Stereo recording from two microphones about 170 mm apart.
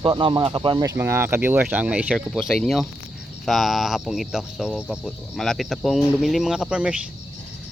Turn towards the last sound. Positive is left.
turn(degrees=-5)  # may be behind; listen again after turning